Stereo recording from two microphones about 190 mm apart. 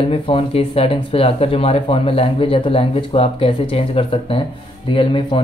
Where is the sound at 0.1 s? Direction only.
30° left (ahead or behind).